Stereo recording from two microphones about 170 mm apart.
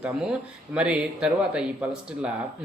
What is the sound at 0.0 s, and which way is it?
Speech, 5° right (ahead or behind).